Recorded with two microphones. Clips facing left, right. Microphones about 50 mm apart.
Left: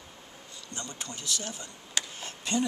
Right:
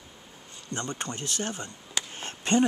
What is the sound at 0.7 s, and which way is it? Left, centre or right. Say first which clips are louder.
Speech: right 7 dB; right.